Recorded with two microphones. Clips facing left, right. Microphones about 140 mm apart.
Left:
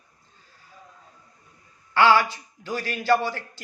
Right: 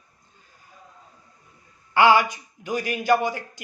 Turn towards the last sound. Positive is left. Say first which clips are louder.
# right 1 dB
turn(degrees=-15)  # may be behind; listen again after turning